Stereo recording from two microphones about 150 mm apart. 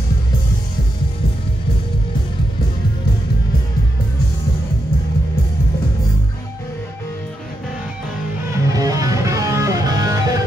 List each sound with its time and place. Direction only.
8.6 s music: 25° right (ahead or behind)